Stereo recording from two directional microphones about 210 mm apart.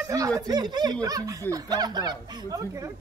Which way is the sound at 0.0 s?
15° right (ahead or behind).